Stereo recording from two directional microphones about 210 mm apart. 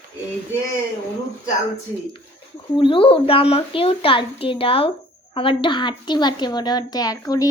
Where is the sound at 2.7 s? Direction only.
25° left (ahead or behind).